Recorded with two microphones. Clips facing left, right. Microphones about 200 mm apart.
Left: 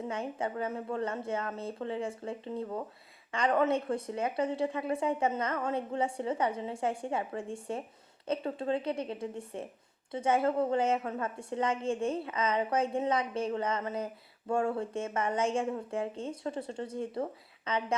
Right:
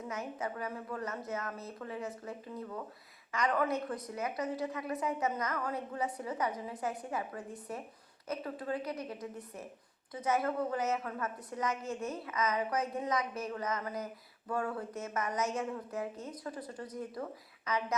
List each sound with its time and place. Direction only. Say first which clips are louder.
0.1 s a woman's voice: left 1 dB; 30° left (ahead or behind)